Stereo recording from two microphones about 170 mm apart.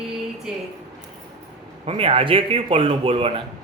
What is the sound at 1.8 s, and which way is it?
A man's voice, 35° right (ahead or behind).